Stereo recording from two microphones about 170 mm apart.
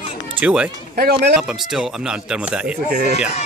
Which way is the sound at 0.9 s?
65° right (ahead or behind).